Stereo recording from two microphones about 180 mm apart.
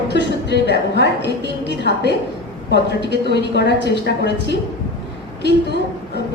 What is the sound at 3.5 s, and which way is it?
Speech, 70° left (ahead or behind).